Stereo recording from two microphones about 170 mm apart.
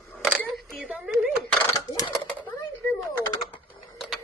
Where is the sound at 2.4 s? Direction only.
10° left (ahead or behind).